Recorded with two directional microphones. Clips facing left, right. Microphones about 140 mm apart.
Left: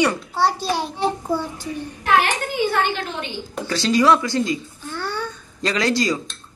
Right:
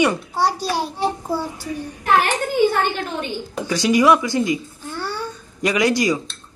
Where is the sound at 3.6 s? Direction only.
15° right (ahead or behind).